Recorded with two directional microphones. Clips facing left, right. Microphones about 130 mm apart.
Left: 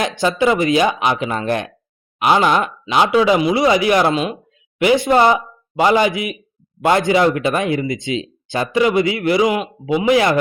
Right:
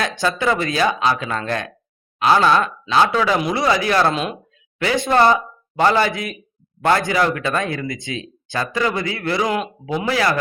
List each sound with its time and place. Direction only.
0.0 s speech: 15° left (ahead or behind)
4.1 s speech: 5° left (ahead or behind)
4.8 s speech: 15° left (ahead or behind)